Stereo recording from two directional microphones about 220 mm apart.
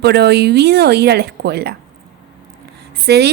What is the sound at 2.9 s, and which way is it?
Speech, 50° right (ahead or behind).